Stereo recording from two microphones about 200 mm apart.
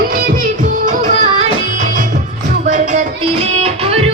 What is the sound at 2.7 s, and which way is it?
Music, 40° right (ahead or behind).